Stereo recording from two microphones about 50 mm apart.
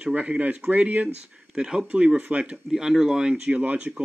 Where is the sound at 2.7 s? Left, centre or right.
Centre.